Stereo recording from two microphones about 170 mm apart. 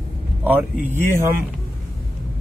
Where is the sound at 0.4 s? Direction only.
10° right (ahead or behind).